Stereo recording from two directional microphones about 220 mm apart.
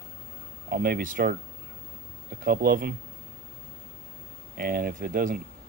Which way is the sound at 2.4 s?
45° right (ahead or behind).